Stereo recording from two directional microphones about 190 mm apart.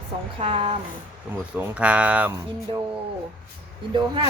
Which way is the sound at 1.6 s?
5° right (ahead or behind).